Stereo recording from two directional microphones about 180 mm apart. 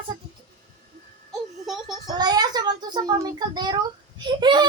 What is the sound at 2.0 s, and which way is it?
A child's voice, 20° right (ahead or behind).